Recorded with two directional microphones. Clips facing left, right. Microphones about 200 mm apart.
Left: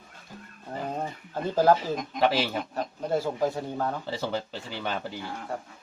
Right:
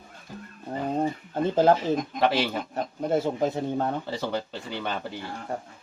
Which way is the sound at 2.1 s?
Centre (ahead or behind).